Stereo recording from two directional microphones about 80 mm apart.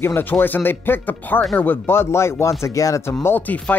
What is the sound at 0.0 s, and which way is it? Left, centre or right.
Speech, left.